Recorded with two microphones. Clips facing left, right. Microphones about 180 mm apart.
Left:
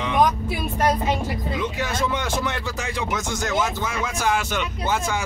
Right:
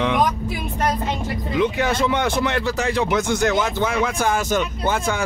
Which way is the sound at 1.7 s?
60° right (ahead or behind).